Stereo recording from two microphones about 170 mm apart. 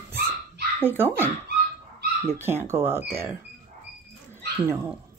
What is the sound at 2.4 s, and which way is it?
Speech, 15° right (ahead or behind).